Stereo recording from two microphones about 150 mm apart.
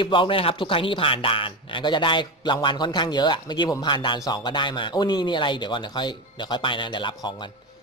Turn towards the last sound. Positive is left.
turn(degrees=30)  # may be behind; listen again after turning